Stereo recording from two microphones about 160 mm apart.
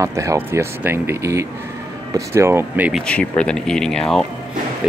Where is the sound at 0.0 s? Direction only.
20° right (ahead or behind).